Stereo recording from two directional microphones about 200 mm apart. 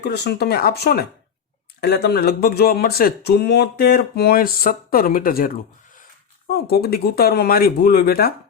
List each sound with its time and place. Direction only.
0.0 s speech: 55° left (ahead or behind)
6.5 s speech: 50° left (ahead or behind)